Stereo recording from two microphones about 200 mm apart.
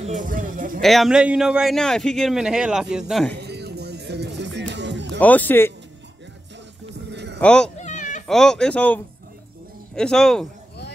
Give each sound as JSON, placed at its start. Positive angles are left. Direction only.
{"t": 0.0, "sound": "speech", "side_deg": -40}
{"t": 0.7, "sound": "a man's voice", "side_deg": 0}
{"t": 3.3, "sound": "music", "side_deg": -55}
{"t": 5.2, "sound": "speech", "side_deg": 10}
{"t": 7.1, "sound": "a sound", "side_deg": -60}
{"t": 7.3, "sound": "speech", "side_deg": 5}
{"t": 7.7, "sound": "cat", "side_deg": 35}
{"t": 8.3, "sound": "a man's voice", "side_deg": 5}